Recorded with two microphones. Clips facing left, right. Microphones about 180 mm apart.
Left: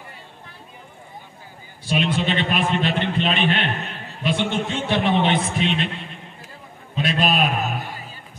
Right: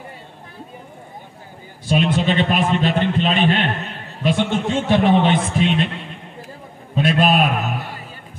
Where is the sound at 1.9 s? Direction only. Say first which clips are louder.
Right 4 dB; 45° right (ahead or behind).